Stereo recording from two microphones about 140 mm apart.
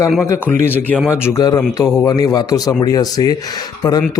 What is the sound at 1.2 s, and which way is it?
Speech, 25° left (ahead or behind).